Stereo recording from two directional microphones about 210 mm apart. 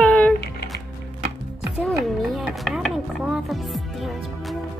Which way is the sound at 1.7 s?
Centre (ahead or behind).